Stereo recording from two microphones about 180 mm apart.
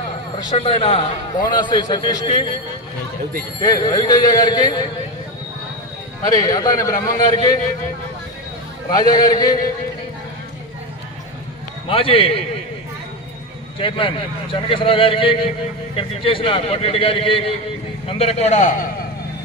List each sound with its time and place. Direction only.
0.6 s a man's voice: 30° left (ahead or behind)
3.6 s a man's voice: 20° left (ahead or behind)
6.2 s a man's voice: 20° left (ahead or behind)
8.9 s a man's voice: 20° left (ahead or behind)
11.9 s a man's voice: 30° left (ahead or behind)
13.7 s a man's voice: 30° left (ahead or behind); by 18.9 s 45° left (ahead or behind)